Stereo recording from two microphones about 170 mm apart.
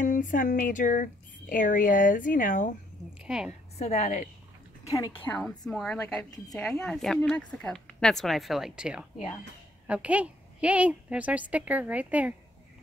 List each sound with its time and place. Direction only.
0.0 s speech: 50° left (ahead or behind)
3.2 s speech: 5° right (ahead or behind)
3.7 s a woman's voice: 40° left (ahead or behind)
4.8 s a woman's voice: 20° left (ahead or behind)
5.7 s a woman's voice: 5° left (ahead or behind)